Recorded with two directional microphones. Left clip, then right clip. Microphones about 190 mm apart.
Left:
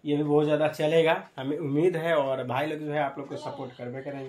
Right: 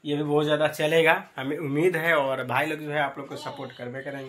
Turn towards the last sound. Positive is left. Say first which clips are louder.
# right 2 dB
turn(degrees=0)  # may be behind; listen again after turning